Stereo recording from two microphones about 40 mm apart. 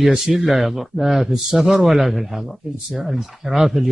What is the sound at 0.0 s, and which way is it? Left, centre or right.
Speech, centre.